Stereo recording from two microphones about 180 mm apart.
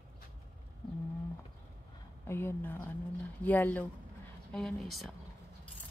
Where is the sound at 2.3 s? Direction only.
15° left (ahead or behind).